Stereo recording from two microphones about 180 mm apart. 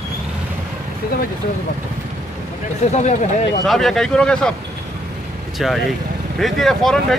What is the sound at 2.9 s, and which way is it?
Speech, 40° left (ahead or behind).